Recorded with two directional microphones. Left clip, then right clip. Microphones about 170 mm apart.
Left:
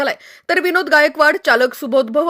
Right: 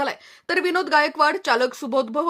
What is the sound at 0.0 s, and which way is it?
Speech, 20° left (ahead or behind).